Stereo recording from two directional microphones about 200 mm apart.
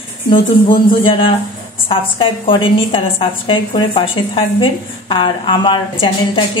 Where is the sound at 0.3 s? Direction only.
25° left (ahead or behind).